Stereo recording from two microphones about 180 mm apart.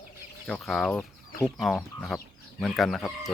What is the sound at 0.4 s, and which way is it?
Speech, centre (ahead or behind).